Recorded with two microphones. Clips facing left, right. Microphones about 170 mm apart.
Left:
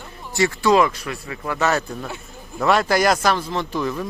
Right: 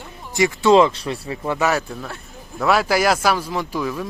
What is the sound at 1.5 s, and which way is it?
Speech, 10° right (ahead or behind).